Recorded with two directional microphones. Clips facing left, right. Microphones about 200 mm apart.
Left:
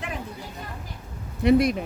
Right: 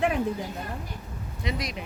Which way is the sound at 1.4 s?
55° left (ahead or behind).